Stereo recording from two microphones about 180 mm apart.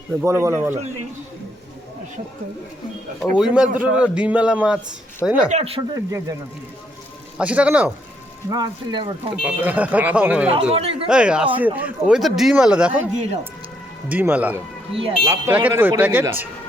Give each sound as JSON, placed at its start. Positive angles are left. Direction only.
{"t": 0.2, "sound": "a man's voice", "side_deg": -15}
{"t": 3.2, "sound": "a man's voice", "side_deg": -5}
{"t": 5.5, "sound": "speech", "side_deg": -35}
{"t": 5.9, "sound": "speech", "side_deg": -20}
{"t": 7.3, "sound": "a man's voice", "side_deg": -5}
{"t": 8.4, "sound": "speech", "side_deg": -20}
{"t": 9.3, "sound": "a man's voice", "side_deg": -10}
{"t": 10.5, "sound": "speech", "side_deg": -35}
{"t": 11.1, "sound": "a man's voice", "side_deg": -5}
{"t": 14.1, "sound": "a man's voice", "side_deg": -10}